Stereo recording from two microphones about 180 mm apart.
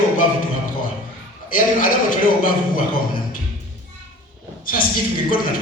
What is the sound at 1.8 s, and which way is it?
A man's voice, 50° left (ahead or behind).